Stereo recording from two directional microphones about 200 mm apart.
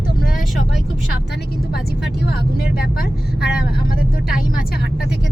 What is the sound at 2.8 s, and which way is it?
Speech, 50° left (ahead or behind).